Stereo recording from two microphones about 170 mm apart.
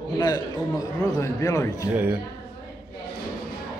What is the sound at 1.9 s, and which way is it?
Speech, 10° right (ahead or behind).